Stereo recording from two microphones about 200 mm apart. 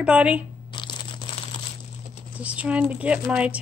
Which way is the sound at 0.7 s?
25° left (ahead or behind).